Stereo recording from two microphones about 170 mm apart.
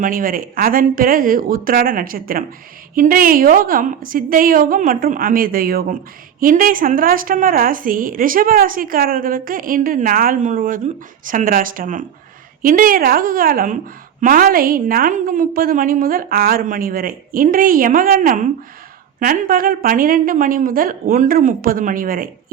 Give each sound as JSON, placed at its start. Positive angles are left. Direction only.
{"t": 0.0, "sound": "speech", "side_deg": -55}